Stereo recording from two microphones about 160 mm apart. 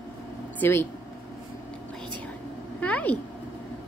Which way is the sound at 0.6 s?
15° left (ahead or behind).